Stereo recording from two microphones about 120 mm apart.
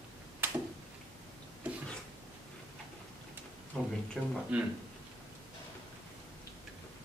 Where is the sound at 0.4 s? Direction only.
20° right (ahead or behind).